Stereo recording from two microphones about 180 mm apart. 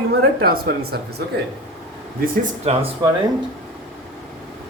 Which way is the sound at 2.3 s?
45° right (ahead or behind).